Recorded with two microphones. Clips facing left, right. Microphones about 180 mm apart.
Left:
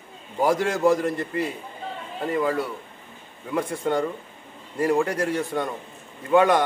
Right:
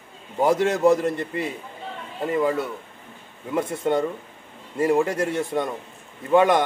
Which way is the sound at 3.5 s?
25° right (ahead or behind).